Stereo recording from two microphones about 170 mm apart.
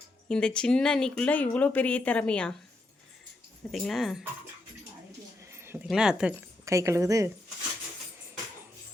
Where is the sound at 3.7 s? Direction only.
Centre (ahead or behind).